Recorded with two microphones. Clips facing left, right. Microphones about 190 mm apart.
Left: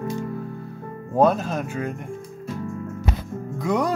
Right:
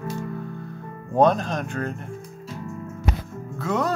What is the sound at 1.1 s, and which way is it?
Speech, 5° left (ahead or behind).